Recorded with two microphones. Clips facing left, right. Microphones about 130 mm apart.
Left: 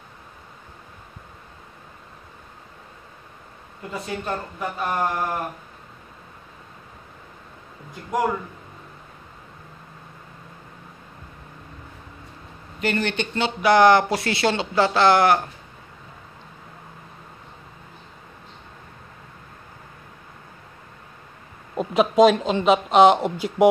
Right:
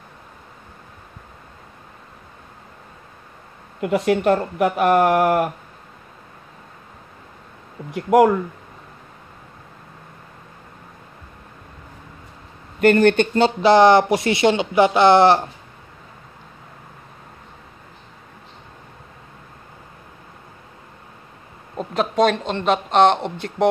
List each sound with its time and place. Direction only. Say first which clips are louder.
3.8 s speech: right 12 dB; 75° right (ahead or behind)
7.9 s speech: right 10 dB; 75° right (ahead or behind)
12.8 s speech: right 10 dB; 50° right (ahead or behind); by 15.4 s 25° right (ahead or behind)
21.7 s speech: left 3 dB; 5° left (ahead or behind)